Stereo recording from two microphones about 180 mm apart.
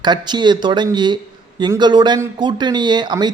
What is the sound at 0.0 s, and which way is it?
Speech, 25° right (ahead or behind).